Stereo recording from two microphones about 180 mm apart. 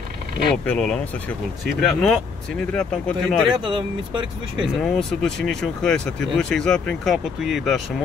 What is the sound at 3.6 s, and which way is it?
Speech, 25° right (ahead or behind).